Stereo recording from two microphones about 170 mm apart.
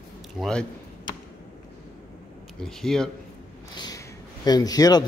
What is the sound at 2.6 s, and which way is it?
Speech, 5° left (ahead or behind).